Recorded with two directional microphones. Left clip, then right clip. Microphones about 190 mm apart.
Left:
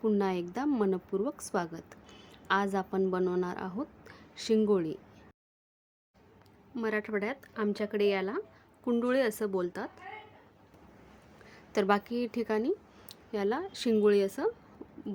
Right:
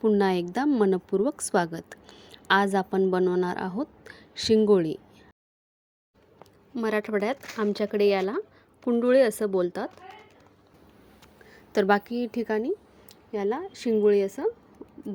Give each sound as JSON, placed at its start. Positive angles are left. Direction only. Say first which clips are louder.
{"t": 0.0, "sound": "a woman's voice", "louder": "right 7 dB", "side_deg": -25}
{"t": 6.4, "sound": "a woman's voice", "louder": "right 5 dB", "side_deg": -25}
{"t": 11.5, "sound": "a woman's voice", "louder": "right 5 dB", "side_deg": -20}